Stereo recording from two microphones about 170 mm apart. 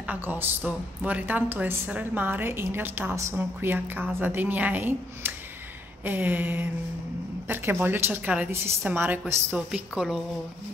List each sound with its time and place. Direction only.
0.0 s speech: 10° right (ahead or behind)